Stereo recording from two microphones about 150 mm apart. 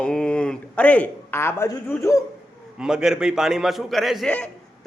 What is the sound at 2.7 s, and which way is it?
A man's voice, 5° right (ahead or behind).